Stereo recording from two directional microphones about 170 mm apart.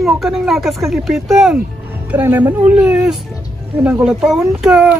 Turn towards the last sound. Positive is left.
turn(degrees=-5)  # may be behind; listen again after turning